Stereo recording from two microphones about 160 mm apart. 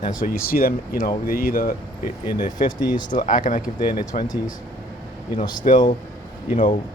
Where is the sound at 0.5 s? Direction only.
65° left (ahead or behind).